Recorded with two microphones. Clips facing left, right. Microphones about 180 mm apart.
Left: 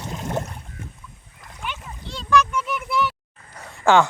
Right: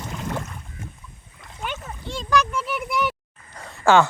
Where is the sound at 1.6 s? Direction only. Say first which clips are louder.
Right 2 dB; 45° right (ahead or behind).